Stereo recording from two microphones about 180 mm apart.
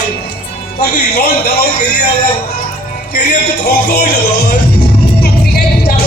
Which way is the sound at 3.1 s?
60° left (ahead or behind).